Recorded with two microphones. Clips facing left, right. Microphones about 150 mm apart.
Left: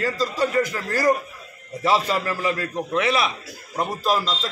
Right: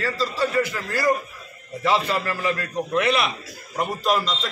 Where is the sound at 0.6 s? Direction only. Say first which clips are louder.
Left 1 dB; 45° left (ahead or behind).